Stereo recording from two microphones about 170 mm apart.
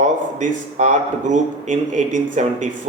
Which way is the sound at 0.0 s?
45° right (ahead or behind).